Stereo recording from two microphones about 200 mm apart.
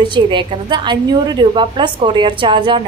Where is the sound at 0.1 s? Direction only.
25° right (ahead or behind).